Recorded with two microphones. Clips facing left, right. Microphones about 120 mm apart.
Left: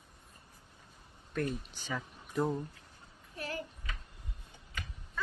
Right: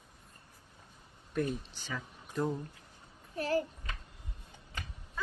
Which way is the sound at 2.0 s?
5° left (ahead or behind).